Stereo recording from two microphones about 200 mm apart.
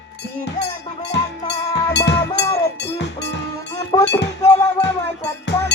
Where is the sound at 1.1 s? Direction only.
60° left (ahead or behind).